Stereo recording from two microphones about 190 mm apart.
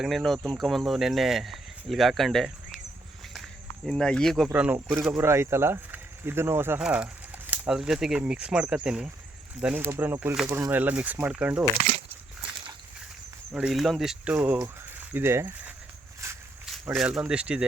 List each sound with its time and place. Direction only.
0.0 s speech: centre (ahead or behind)
3.8 s speech: 5° left (ahead or behind)
4.4 s speech: 10° right (ahead or behind)
13.5 s speech: 5° right (ahead or behind)
16.2 s walk: 15° right (ahead or behind)
16.8 s speech: 5° right (ahead or behind)